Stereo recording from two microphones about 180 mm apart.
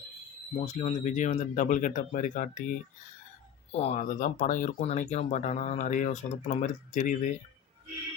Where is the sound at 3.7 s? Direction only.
35° left (ahead or behind).